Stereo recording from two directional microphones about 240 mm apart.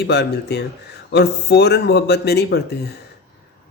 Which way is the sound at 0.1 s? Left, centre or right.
Left.